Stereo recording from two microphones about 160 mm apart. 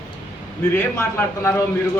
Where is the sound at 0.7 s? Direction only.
15° left (ahead or behind).